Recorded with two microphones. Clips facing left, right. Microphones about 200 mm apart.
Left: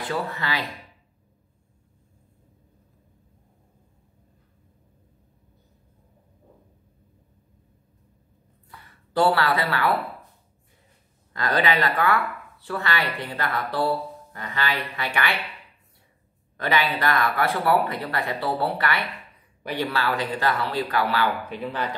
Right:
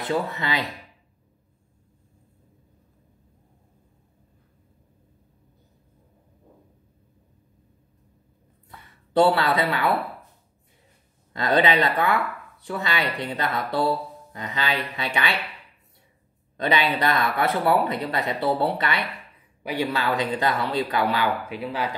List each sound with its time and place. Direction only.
0.1 s speech: 20° right (ahead or behind)
8.6 s a sound: 20° right (ahead or behind)
11.3 s speech: 25° right (ahead or behind)
16.5 s speech: 20° right (ahead or behind)